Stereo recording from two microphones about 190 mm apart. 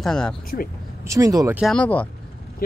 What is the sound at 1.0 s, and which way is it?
Speech, 15° right (ahead or behind).